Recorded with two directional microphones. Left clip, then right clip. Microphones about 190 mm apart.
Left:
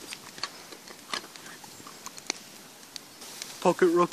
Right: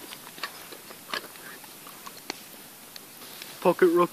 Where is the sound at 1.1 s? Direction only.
40° left (ahead or behind).